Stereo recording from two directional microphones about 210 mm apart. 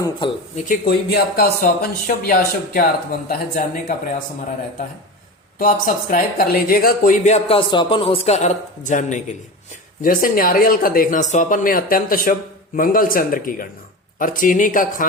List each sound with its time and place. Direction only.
0.5 s speech: 40° left (ahead or behind)
5.5 s speech: 40° left (ahead or behind)